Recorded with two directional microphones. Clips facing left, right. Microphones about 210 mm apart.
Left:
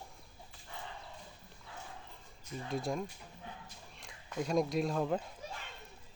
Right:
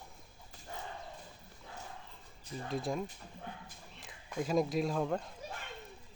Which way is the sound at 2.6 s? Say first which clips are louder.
Even; centre (ahead or behind).